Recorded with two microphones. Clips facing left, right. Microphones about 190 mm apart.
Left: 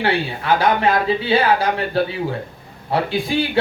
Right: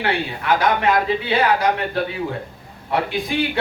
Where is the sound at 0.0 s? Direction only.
30° left (ahead or behind).